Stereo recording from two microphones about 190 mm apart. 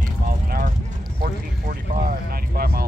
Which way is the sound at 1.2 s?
50° right (ahead or behind).